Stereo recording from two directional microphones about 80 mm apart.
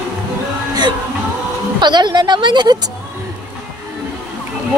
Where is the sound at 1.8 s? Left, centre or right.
Right.